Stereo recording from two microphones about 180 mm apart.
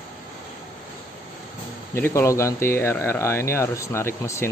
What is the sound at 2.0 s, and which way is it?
Speech, 15° left (ahead or behind).